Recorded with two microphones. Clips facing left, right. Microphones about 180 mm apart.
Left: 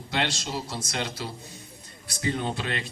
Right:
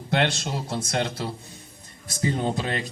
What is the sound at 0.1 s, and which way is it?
A man's voice, 55° right (ahead or behind).